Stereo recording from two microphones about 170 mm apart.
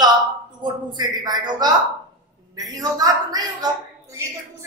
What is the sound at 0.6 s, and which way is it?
A woman's voice, 25° right (ahead or behind).